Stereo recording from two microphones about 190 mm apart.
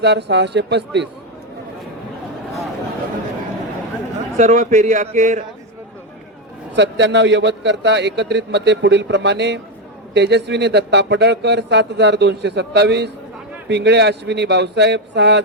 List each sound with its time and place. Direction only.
0.0 s speech: 60° right (ahead or behind)
4.4 s a man's voice: 35° right (ahead or behind)
6.7 s speech: 65° right (ahead or behind)